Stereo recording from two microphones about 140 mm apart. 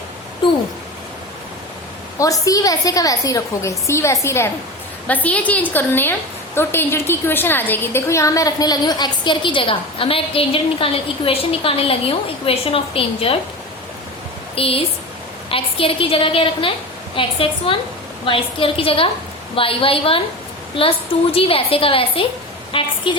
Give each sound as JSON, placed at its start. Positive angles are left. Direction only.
{"t": 2.1, "sound": "a woman's voice", "side_deg": 25}
{"t": 14.5, "sound": "a woman's voice", "side_deg": 45}
{"t": 21.3, "sound": "a woman's voice", "side_deg": 40}